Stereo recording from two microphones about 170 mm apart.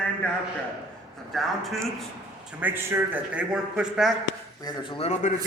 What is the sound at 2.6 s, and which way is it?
A man's voice, 10° right (ahead or behind).